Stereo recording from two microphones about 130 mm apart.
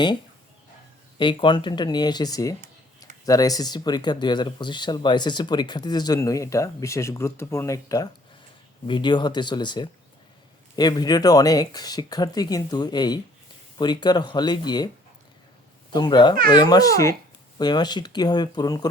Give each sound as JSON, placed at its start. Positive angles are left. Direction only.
{"t": 1.2, "sound": "speech", "side_deg": 40}
{"t": 15.9, "sound": "speech", "side_deg": 35}